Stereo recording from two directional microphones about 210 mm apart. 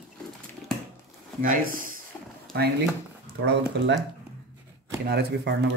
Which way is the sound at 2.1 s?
5° left (ahead or behind).